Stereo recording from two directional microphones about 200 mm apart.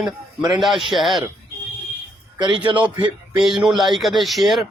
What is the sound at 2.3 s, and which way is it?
Speech, 25° right (ahead or behind).